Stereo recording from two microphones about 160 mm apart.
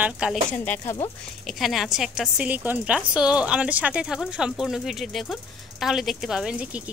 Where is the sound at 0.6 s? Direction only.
10° left (ahead or behind).